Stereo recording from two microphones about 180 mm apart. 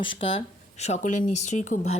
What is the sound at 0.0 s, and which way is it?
Speech, 30° left (ahead or behind).